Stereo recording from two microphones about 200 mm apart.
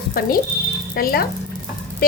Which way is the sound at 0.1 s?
45° left (ahead or behind).